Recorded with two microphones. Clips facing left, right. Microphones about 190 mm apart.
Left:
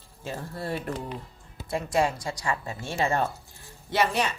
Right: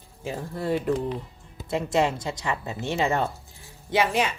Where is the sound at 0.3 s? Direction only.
20° right (ahead or behind).